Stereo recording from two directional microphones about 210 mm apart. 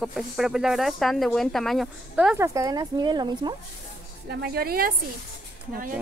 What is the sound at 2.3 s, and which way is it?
Speech, 15° right (ahead or behind).